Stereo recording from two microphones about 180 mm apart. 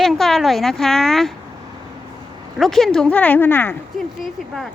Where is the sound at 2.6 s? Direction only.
Centre (ahead or behind).